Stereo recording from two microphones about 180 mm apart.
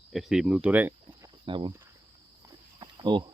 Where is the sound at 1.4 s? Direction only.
25° right (ahead or behind).